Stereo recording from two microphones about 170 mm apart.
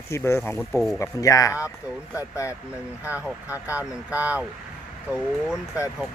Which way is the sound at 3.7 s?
10° right (ahead or behind).